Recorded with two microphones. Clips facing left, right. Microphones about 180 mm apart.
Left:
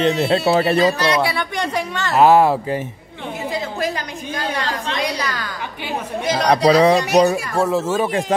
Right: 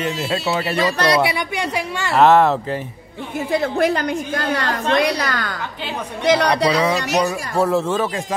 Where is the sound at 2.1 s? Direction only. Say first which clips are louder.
Left 1 dB; 10° left (ahead or behind).